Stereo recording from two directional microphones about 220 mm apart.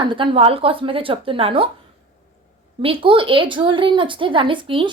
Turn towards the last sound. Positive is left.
turn(degrees=-25)  # may be behind; listen again after turning